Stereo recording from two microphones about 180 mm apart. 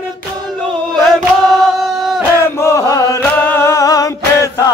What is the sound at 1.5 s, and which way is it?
Choir, centre (ahead or behind).